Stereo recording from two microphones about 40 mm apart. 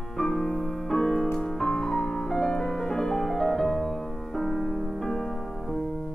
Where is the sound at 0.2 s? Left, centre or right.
Centre.